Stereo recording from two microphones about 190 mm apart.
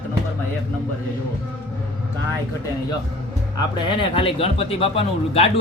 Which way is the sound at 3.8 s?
25° left (ahead or behind).